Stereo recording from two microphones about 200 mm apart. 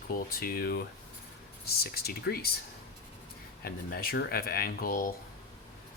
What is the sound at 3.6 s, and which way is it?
Speech, 45° left (ahead or behind).